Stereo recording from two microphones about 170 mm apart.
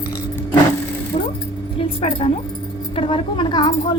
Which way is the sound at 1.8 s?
35° left (ahead or behind).